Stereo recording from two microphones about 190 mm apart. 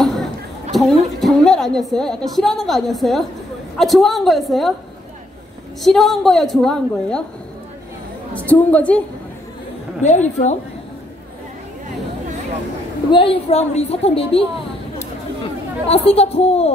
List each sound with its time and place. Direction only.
0.0 s a sound: centre (ahead or behind)
2.3 s a woman's voice: centre (ahead or behind)
5.8 s a woman's voice: centre (ahead or behind)
8.4 s a woman's voice: 10° left (ahead or behind)
10.0 s a woman's voice: 40° left (ahead or behind)
13.1 s a woman's voice: 30° left (ahead or behind)
15.9 s a woman's voice: 30° left (ahead or behind)